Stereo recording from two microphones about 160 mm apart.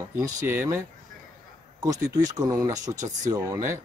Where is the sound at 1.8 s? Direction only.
25° right (ahead or behind).